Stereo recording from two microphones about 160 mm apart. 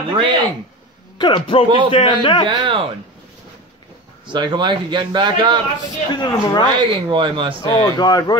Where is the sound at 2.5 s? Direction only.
30° right (ahead or behind).